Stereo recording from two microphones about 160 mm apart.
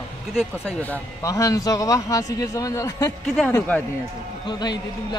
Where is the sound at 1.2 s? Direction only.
20° left (ahead or behind).